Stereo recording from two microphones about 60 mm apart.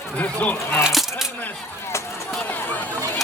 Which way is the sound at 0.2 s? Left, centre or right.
Left.